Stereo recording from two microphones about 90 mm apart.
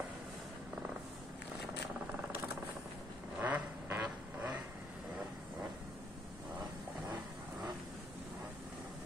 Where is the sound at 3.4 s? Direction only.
20° right (ahead or behind).